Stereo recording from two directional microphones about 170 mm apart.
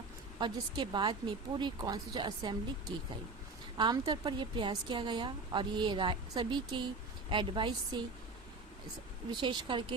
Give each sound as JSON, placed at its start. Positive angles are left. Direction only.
{"t": 0.3, "sound": "a woman's voice", "side_deg": -25}
{"t": 3.8, "sound": "a woman's voice", "side_deg": -25}
{"t": 9.3, "sound": "a woman's voice", "side_deg": -30}